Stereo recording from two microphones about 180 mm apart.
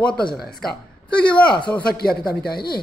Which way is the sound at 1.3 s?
5° left (ahead or behind).